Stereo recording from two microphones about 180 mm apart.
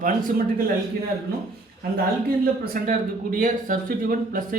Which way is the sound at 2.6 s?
50° right (ahead or behind).